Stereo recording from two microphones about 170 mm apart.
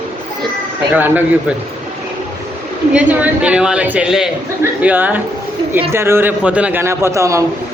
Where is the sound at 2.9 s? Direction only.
5° right (ahead or behind).